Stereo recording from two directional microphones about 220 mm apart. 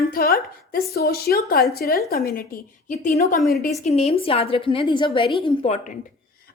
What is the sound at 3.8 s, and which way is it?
A woman's voice, 30° left (ahead or behind).